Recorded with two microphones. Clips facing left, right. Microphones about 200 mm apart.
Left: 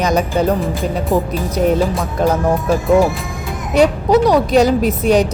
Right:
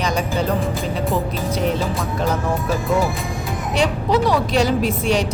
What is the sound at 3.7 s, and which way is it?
A woman's voice, 40° left (ahead or behind).